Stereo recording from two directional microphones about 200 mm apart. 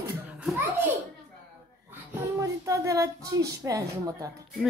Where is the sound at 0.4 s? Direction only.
10° right (ahead or behind).